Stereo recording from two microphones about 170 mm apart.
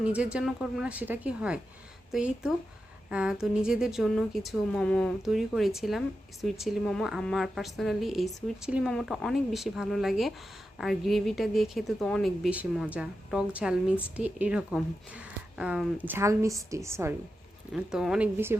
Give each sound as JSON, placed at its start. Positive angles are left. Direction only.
{"t": 0.0, "sound": "a woman's voice", "side_deg": -5}
{"t": 17.7, "sound": "a woman's voice", "side_deg": -5}